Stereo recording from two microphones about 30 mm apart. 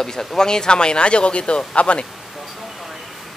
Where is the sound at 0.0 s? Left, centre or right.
Left.